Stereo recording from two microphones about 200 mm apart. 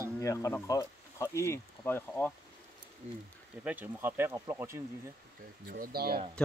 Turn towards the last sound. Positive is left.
turn(degrees=5)  # may be behind; listen again after turning